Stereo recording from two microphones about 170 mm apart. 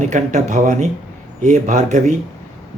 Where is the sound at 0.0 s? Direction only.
45° right (ahead or behind).